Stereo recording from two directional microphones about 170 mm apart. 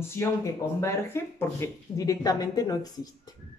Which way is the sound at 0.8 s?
15° left (ahead or behind).